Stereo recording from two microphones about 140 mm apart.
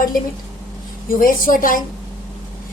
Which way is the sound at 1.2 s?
90° left.